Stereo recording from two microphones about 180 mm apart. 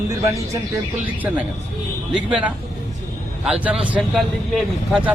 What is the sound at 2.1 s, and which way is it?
A man's voice, 5° right (ahead or behind).